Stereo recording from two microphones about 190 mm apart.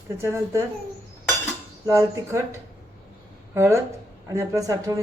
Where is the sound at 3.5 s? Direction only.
15° right (ahead or behind).